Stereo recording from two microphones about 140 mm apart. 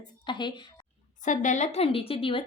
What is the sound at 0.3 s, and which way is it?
Speech, 35° left (ahead or behind).